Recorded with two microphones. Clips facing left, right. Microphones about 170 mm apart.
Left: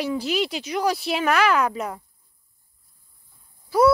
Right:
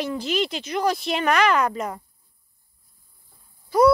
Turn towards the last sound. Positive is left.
turn(degrees=5)  # may be behind; listen again after turning